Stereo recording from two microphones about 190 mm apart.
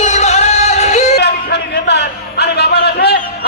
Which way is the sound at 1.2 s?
60° left (ahead or behind).